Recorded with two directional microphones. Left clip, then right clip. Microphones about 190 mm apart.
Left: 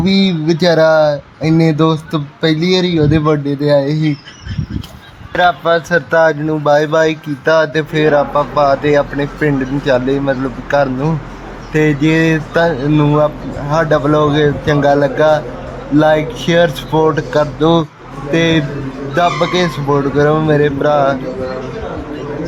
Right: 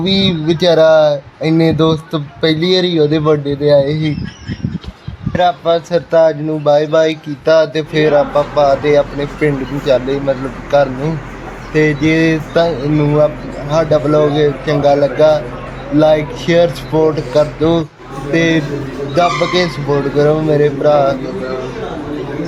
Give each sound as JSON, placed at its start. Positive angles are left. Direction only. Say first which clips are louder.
{"t": 0.0, "sound": "speech", "louder": "right 1 dB", "side_deg": 5}
{"t": 5.3, "sound": "speech", "louder": "left 1 dB", "side_deg": 10}